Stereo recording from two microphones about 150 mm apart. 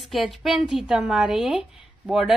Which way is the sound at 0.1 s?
Centre (ahead or behind).